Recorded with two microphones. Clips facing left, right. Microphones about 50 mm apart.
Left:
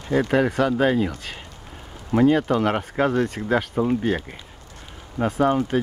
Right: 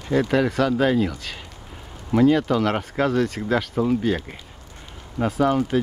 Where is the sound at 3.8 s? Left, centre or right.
Centre.